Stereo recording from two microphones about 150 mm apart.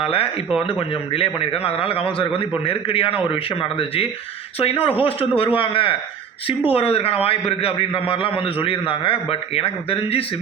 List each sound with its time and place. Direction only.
0.0 s a man's voice: 40° left (ahead or behind)